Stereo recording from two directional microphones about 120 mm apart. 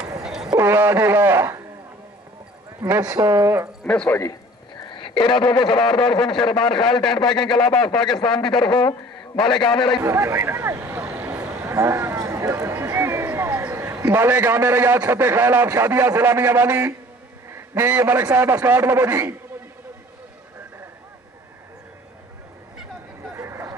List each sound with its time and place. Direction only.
0.2 s a sound: 5° right (ahead or behind)
0.6 s a sound: 20° right (ahead or behind)
2.8 s speech: 30° right (ahead or behind)
3.8 s a man's voice: 10° left (ahead or behind)
4.8 s a man's voice: 45° left (ahead or behind)
6.8 s speech: 5° left (ahead or behind)
7.2 s a man's voice: 40° left (ahead or behind)
7.5 s a man's voice: 5° left (ahead or behind)
8.6 s a man's voice: 40° left (ahead or behind)
9.7 s speech: 5° left (ahead or behind)
10.0 s speech: 25° right (ahead or behind)
17.5 s a sound: 20° right (ahead or behind)
18.3 s speech: 25° right (ahead or behind)
23.3 s a sound: 20° right (ahead or behind)